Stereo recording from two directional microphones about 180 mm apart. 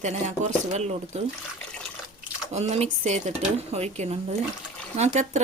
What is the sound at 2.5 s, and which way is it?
A woman's voice, 40° right (ahead or behind).